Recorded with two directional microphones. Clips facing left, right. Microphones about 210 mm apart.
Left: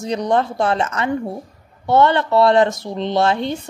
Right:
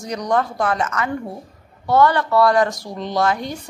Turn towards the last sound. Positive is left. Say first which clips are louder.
# left 3 dB
turn(degrees=25)  # may be behind; listen again after turning